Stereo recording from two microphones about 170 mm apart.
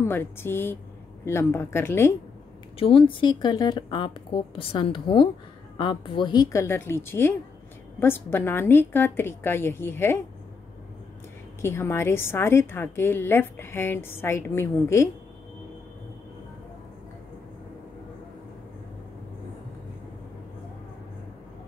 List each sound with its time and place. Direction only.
0.0 s a woman's voice: 15° left (ahead or behind)
2.8 s a woman's voice: 30° left (ahead or behind); by 10.2 s 15° left (ahead or behind)
11.6 s a woman's voice: 15° left (ahead or behind)